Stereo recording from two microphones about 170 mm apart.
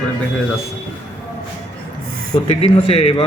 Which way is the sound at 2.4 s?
35° left (ahead or behind).